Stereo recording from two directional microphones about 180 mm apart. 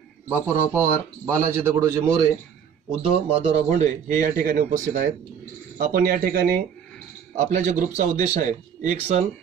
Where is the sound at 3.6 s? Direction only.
45° right (ahead or behind).